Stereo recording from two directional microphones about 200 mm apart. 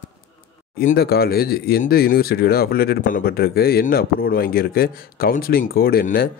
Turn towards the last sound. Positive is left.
turn(degrees=45)  # may be behind; listen again after turning